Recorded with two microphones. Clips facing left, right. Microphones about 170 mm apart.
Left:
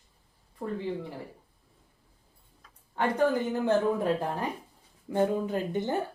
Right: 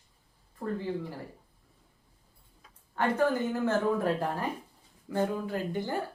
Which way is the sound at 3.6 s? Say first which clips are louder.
Left 2 dB; 15° left (ahead or behind).